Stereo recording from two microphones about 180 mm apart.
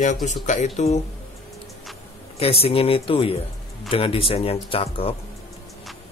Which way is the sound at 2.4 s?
35° left (ahead or behind).